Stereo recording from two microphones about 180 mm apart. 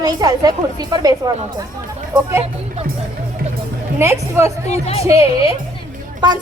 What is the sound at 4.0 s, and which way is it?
Speech, 15° right (ahead or behind).